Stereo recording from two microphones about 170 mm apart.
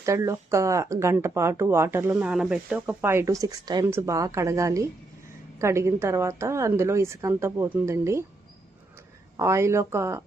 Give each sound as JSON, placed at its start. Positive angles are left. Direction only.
{"t": 0.0, "sound": "speech", "side_deg": -15}
{"t": 9.4, "sound": "speech", "side_deg": -15}